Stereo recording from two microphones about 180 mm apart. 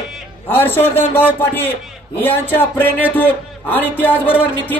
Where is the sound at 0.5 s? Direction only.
10° left (ahead or behind).